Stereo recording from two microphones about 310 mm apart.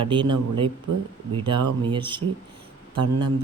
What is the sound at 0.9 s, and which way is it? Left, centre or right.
Speech, right.